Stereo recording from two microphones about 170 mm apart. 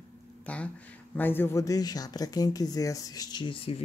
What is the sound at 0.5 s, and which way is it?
Speech, 10° left (ahead or behind).